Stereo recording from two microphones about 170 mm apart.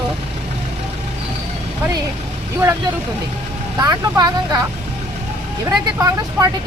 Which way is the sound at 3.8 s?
25° right (ahead or behind).